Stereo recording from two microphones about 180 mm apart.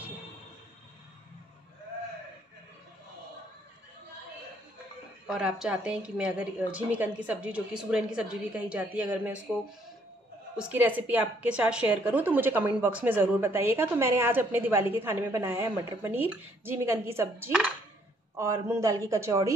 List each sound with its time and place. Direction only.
5.3 s a woman's voice: 5° right (ahead or behind)
10.6 s a woman's voice: 10° right (ahead or behind)